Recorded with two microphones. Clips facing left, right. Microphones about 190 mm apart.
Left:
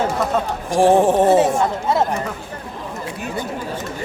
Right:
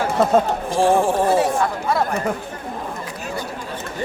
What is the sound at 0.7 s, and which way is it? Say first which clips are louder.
Speech: left 4 dB; 15° left (ahead or behind).